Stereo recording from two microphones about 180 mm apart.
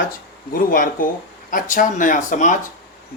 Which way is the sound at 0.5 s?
50° left (ahead or behind).